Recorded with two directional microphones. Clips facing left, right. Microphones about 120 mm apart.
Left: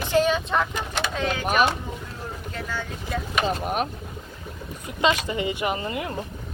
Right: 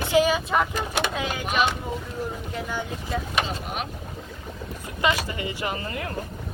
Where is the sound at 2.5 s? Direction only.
15° right (ahead or behind).